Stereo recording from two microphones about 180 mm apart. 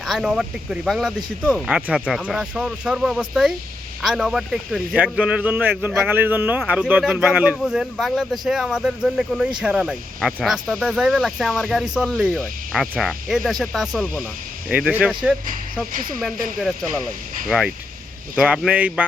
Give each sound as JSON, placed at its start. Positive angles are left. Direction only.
{"t": 0.0, "sound": "speech", "side_deg": 0}
{"t": 15.9, "sound": "speech", "side_deg": -50}
{"t": 16.6, "sound": "speech", "side_deg": 0}
{"t": 18.3, "sound": "speech", "side_deg": -5}